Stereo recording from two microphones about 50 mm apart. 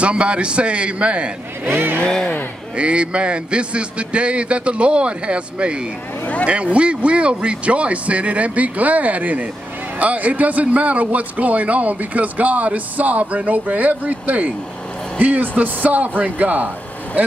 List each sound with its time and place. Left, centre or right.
0.0 s a man's voice: right
1.7 s speech: right
2.0 s a sound: centre
2.7 s a man's voice: right